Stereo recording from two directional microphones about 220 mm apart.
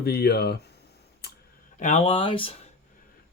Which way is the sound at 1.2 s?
45° left (ahead or behind).